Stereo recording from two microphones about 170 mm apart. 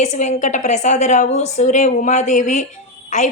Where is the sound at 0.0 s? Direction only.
45° left (ahead or behind).